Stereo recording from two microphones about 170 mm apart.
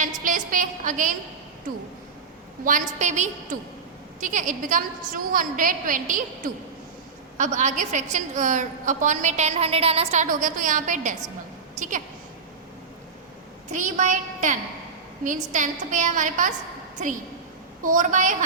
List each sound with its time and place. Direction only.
0.0 s a woman's voice: 50° right (ahead or behind)
2.6 s a woman's voice: 50° right (ahead or behind)
13.7 s a woman's voice: 50° right (ahead or behind)